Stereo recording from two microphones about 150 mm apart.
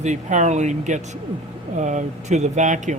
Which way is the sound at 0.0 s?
50° right (ahead or behind).